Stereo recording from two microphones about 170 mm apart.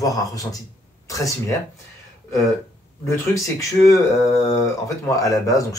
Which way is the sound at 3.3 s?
20° left (ahead or behind).